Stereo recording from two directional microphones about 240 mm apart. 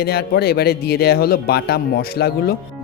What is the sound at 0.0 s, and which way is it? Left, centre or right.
Speech, left.